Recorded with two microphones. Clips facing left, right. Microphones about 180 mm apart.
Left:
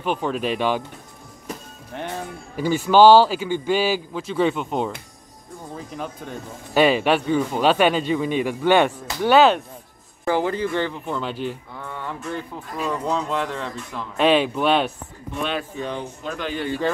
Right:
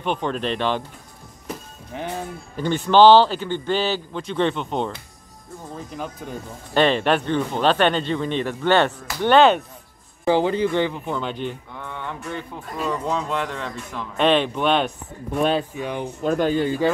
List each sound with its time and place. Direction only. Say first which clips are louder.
0.0 s speech: left 1 dB; 5° left (ahead or behind)
1.5 s music: right 1 dB; centre (ahead or behind)
2.5 s speech: left 1 dB; 5° left (ahead or behind)
10.2 s speech: right 3 dB; 20° right (ahead or behind)
10.9 s speech: right 1 dB; centre (ahead or behind)
15.7 s speech: right 1 dB; 10° right (ahead or behind)
16.2 s speech: right 8 dB; 45° right (ahead or behind)